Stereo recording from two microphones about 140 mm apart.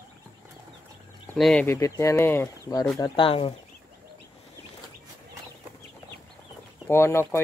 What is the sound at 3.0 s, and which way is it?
Speech, 40° left (ahead or behind).